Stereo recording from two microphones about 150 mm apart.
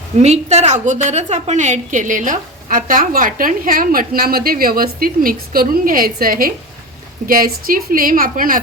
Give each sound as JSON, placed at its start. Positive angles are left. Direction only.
{"t": 0.2, "sound": "a woman's voice", "side_deg": -45}